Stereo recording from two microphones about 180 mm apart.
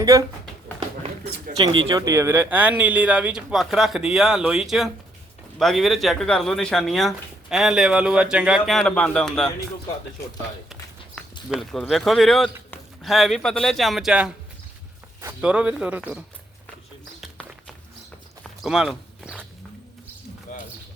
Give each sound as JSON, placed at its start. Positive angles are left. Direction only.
{"t": 0.0, "sound": "speech", "side_deg": -20}
{"t": 1.5, "sound": "speech", "side_deg": -25}
{"t": 2.0, "sound": "speech", "side_deg": -15}
{"t": 11.4, "sound": "speech", "side_deg": 0}
{"t": 17.2, "sound": "a sound", "side_deg": 0}
{"t": 18.6, "sound": "walk", "side_deg": -5}